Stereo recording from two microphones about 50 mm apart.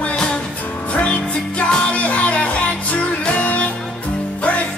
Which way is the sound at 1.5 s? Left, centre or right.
Left.